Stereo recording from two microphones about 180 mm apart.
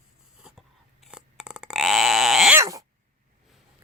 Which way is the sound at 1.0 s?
5° right (ahead or behind).